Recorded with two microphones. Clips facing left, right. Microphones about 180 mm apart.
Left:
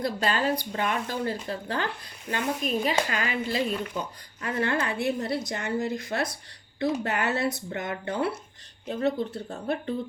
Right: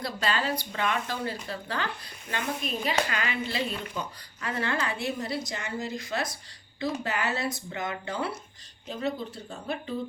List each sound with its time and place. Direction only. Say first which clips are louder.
0.3 s a woman's voice: left 1 dB; 45° left (ahead or behind)